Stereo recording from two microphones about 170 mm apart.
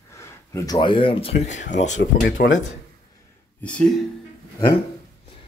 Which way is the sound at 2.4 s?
80° left.